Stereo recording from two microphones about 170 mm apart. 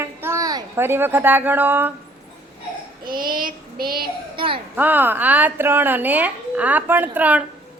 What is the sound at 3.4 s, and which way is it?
Child singing, 60° right (ahead or behind).